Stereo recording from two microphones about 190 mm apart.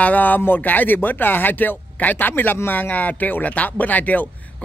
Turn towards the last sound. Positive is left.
turn(degrees=10)  # may be behind; listen again after turning